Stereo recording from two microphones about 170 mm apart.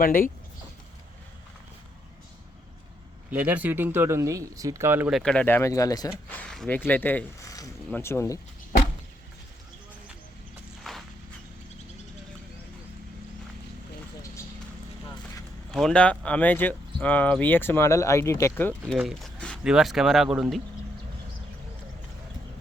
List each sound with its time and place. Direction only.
0.0 s speech: 55° left (ahead or behind)
3.2 s speech: 10° right (ahead or behind)
5.1 s speech: 5° left (ahead or behind); by 6.1 s 20° left (ahead or behind)
6.2 s speech: 10° left (ahead or behind)
10.9 s walk: centre (ahead or behind)
15.0 s clip-clop: 20° left (ahead or behind)
15.7 s speech: 5° left (ahead or behind)
18.9 s speech: centre (ahead or behind)